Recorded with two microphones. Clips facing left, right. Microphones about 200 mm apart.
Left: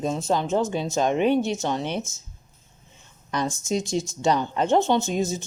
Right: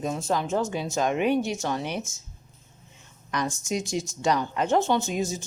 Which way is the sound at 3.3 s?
25° left (ahead or behind).